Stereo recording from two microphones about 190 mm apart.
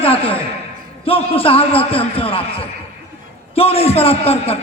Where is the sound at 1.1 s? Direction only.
30° left (ahead or behind).